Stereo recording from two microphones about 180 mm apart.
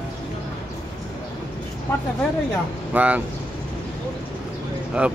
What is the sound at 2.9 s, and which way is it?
Speech, 10° right (ahead or behind).